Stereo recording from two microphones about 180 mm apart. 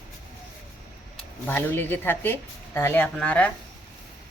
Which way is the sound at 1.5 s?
10° left (ahead or behind).